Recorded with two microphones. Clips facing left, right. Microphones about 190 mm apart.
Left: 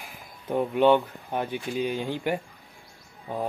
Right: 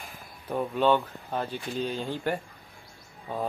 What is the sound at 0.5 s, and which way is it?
Speech, 20° left (ahead or behind).